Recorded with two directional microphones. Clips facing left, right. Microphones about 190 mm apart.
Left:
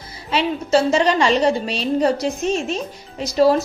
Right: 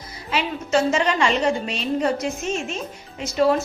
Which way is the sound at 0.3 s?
30° left (ahead or behind).